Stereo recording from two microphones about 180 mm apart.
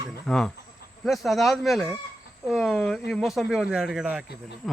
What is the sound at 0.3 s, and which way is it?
Speech, 5° left (ahead or behind).